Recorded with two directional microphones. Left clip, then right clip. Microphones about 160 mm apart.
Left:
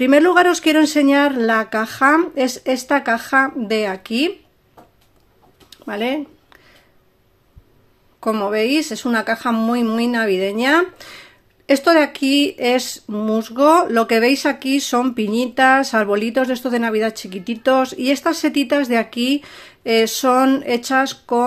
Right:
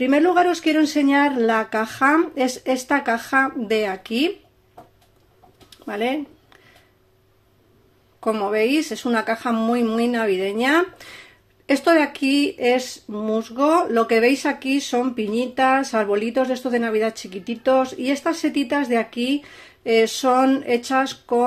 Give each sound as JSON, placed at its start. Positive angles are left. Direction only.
{"t": 0.0, "sound": "speech", "side_deg": 30}
{"t": 5.7, "sound": "a sound", "side_deg": 20}
{"t": 8.2, "sound": "speech", "side_deg": 25}